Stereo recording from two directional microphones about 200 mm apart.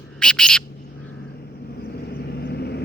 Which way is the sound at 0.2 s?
5° left (ahead or behind).